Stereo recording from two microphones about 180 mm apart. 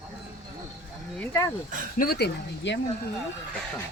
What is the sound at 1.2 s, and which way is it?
Speech, 15° left (ahead or behind).